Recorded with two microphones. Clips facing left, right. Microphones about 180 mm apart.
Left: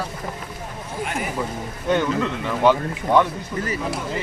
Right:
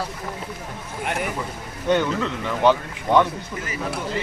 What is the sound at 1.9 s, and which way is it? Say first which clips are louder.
Speech: even; 5° left (ahead or behind).